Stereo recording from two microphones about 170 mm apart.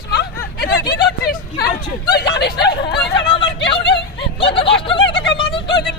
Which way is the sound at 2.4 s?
75° left (ahead or behind).